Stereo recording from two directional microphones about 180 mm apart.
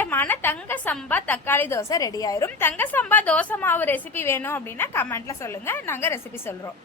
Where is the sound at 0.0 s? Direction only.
10° left (ahead or behind).